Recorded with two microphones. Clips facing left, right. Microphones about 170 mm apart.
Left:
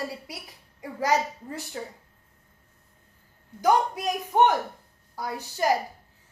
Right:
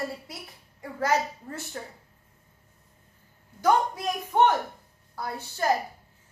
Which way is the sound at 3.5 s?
15° left (ahead or behind).